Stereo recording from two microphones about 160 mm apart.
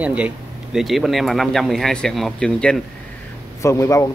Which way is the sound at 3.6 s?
20° left (ahead or behind).